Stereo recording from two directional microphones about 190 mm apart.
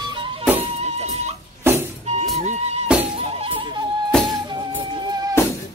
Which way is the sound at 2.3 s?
35° right (ahead or behind).